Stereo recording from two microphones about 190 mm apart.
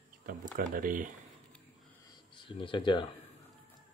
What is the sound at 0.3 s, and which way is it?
Speech, 50° right (ahead or behind).